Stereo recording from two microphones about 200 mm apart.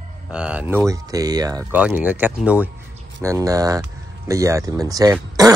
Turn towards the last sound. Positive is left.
turn(degrees=-20)  # may be behind; listen again after turning